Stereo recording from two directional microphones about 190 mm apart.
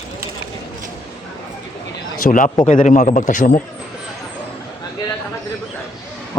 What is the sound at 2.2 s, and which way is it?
A man's voice, 45° left (ahead or behind).